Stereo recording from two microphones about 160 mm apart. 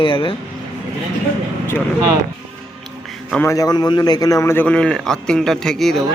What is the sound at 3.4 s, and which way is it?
A man's voice, 20° left (ahead or behind).